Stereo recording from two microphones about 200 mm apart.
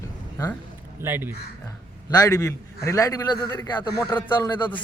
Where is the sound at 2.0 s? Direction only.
15° left (ahead or behind).